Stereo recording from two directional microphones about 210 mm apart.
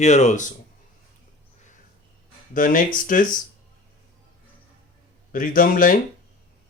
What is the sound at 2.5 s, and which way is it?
Speech, 40° left (ahead or behind).